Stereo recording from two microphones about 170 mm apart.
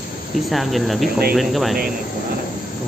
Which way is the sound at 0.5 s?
Centre (ahead or behind).